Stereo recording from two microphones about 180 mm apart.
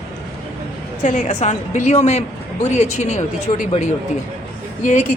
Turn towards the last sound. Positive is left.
turn(degrees=40)  # may be behind; listen again after turning